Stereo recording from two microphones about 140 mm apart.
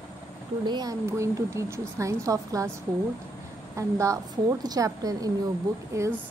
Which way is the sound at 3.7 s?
20° right (ahead or behind).